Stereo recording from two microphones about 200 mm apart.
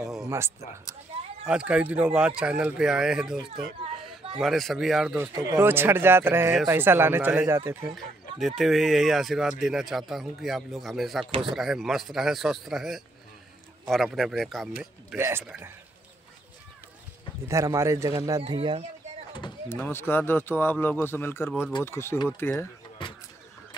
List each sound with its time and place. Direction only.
0.0 s a sound: 5° right (ahead or behind)
1.4 s speech: 5° right (ahead or behind)
5.3 s speech: 20° right (ahead or behind)
8.4 s speech: centre (ahead or behind)
17.5 s speech: 15° right (ahead or behind)
19.3 s speech: 20° left (ahead or behind)
19.8 s speech: 10° left (ahead or behind)
23.0 s a sound: 25° left (ahead or behind)